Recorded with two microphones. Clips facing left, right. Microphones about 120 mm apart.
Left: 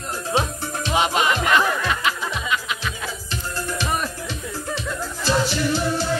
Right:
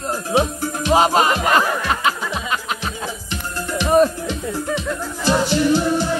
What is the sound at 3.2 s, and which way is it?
Music, 15° right (ahead or behind).